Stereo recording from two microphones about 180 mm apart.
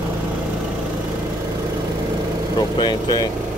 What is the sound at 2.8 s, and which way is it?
Speech, 25° left (ahead or behind).